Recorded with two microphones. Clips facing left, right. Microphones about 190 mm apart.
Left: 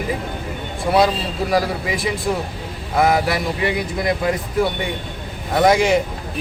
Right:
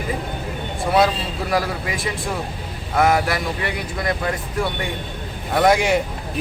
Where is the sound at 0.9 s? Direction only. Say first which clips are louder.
Left 1 dB; 5° left (ahead or behind).